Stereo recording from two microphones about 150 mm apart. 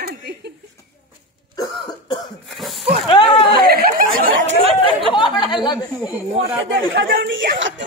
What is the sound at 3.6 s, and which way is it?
Speech, 90° right.